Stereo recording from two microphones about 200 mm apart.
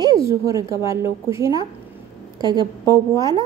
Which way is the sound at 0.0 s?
15° right (ahead or behind).